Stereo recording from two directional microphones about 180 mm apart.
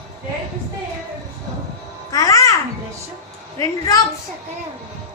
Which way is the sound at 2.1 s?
20° left (ahead or behind).